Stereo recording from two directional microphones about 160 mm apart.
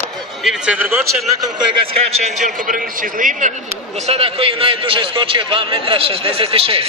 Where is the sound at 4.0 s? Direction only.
40° right (ahead or behind).